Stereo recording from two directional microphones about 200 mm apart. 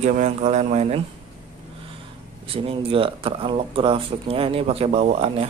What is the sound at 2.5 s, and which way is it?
Speech, 30° right (ahead or behind).